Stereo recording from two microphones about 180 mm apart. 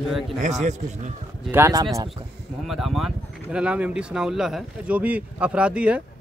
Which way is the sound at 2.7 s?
Centre (ahead or behind).